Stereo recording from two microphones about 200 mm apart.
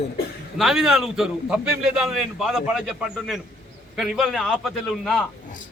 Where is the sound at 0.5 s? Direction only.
Centre (ahead or behind).